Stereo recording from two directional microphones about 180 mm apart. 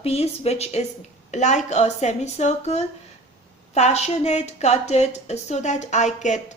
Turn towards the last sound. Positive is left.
turn(degrees=40)  # may be behind; listen again after turning